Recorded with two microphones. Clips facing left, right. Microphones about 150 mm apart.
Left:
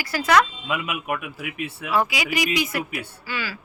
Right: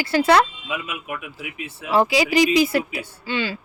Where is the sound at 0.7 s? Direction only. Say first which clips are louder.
Left 3 dB; 65° left (ahead or behind).